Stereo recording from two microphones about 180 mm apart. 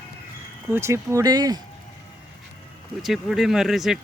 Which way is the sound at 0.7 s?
15° right (ahead or behind).